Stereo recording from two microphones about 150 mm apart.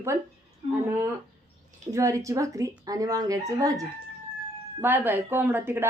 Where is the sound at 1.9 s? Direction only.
20° right (ahead or behind).